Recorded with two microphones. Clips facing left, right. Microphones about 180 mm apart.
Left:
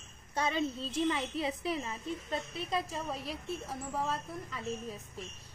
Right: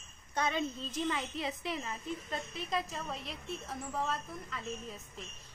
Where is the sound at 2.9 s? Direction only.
5° left (ahead or behind).